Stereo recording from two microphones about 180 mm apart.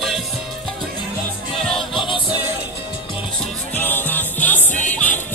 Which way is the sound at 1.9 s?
30° left (ahead or behind).